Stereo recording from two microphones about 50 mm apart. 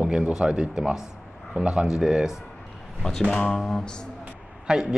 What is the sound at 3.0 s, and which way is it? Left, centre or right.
Speech, centre.